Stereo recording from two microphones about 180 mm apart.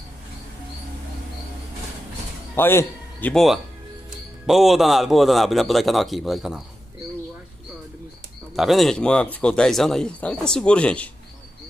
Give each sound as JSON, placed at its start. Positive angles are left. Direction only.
{"t": 2.5, "sound": "a man's voice", "side_deg": 15}
{"t": 8.5, "sound": "speech", "side_deg": 0}